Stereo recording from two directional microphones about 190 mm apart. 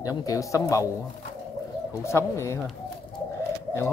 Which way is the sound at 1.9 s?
15° left (ahead or behind).